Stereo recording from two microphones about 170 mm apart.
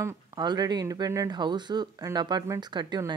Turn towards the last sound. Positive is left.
turn(degrees=-25)  # may be behind; listen again after turning